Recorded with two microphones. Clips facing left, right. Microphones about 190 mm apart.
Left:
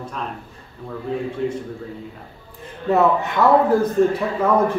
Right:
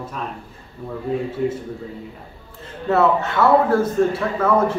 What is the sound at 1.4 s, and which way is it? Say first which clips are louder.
Speech: right 2 dB; 5° right (ahead or behind).